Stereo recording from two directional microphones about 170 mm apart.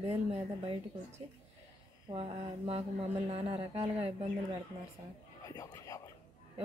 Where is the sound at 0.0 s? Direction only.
35° right (ahead or behind).